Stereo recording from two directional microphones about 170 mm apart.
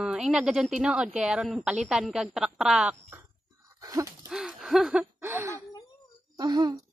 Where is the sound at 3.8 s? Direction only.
20° right (ahead or behind).